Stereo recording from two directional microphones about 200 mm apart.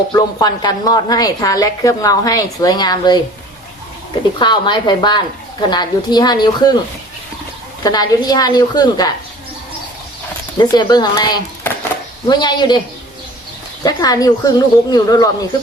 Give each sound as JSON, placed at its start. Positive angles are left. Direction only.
{"t": 0.3, "sound": "a woman's voice", "side_deg": 20}
{"t": 4.4, "sound": "speech", "side_deg": 25}
{"t": 7.9, "sound": "speech", "side_deg": 20}
{"t": 10.6, "sound": "speech", "side_deg": 20}
{"t": 13.8, "sound": "speech", "side_deg": 20}